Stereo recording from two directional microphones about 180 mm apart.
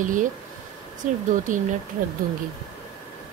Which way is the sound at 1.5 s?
45° right (ahead or behind).